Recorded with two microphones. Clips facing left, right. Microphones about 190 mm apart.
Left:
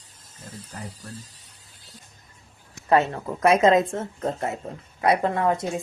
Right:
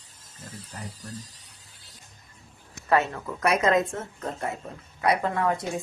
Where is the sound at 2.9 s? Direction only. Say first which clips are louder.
Left 3 dB; 30° left (ahead or behind).